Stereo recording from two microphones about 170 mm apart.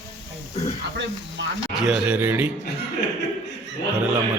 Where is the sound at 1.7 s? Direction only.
5° right (ahead or behind).